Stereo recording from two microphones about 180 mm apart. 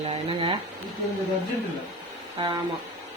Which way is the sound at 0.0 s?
35° right (ahead or behind).